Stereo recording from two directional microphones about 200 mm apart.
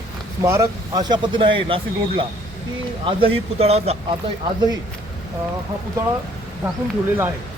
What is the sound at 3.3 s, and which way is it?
Speech, 30° right (ahead or behind).